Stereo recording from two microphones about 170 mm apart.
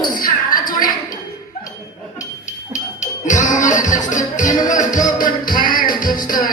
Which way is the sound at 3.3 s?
45° left (ahead or behind).